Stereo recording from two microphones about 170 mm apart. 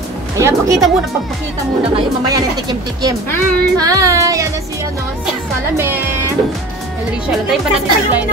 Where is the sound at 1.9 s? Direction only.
25° right (ahead or behind).